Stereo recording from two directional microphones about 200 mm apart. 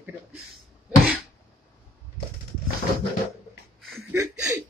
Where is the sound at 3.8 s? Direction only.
Centre (ahead or behind).